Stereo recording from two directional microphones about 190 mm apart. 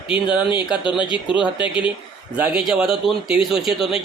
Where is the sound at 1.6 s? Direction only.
25° left (ahead or behind).